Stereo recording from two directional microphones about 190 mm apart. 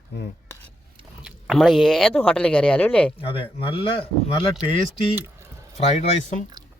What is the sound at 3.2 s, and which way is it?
Speech, 30° left (ahead or behind).